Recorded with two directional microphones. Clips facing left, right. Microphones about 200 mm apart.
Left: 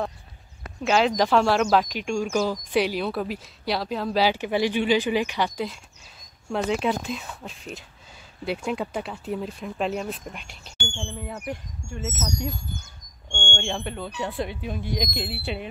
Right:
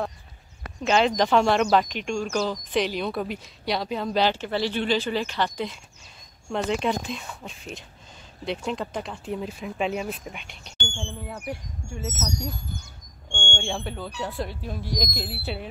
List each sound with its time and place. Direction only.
0.8 s speech: 5° left (ahead or behind)
13.6 s speech: 5° right (ahead or behind)